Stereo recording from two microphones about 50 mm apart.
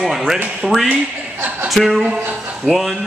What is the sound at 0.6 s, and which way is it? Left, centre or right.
A man's voice, centre.